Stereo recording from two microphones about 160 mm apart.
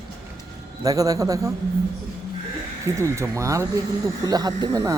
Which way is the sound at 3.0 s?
20° right (ahead or behind).